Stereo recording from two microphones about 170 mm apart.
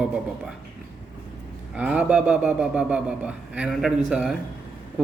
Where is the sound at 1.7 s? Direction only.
10° right (ahead or behind).